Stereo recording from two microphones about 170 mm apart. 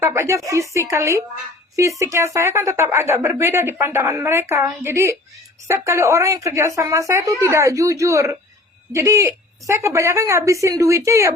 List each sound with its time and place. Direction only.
0.0 s speech: 15° right (ahead or behind)